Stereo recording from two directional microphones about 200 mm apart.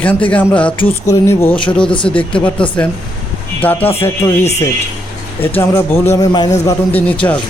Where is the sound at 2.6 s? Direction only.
5° left (ahead or behind).